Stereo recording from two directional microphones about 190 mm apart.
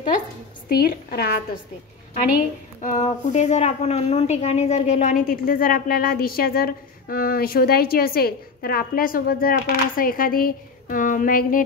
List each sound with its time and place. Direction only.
0.7 s a woman's voice: 55° left (ahead or behind)
2.8 s a woman's voice: 40° left (ahead or behind)